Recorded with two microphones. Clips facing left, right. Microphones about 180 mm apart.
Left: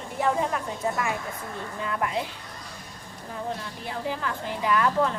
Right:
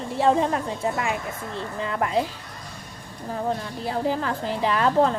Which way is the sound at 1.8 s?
30° right (ahead or behind).